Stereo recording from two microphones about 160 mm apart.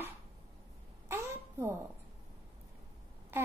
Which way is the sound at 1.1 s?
15° right (ahead or behind).